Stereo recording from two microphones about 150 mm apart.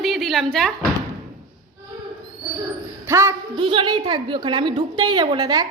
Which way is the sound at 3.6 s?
35° right (ahead or behind).